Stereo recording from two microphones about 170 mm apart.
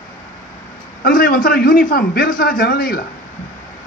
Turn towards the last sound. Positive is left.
turn(degrees=55)  # may be behind; listen again after turning